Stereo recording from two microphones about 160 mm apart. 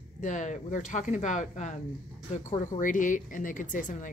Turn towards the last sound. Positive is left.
turn(degrees=55)  # may be behind; listen again after turning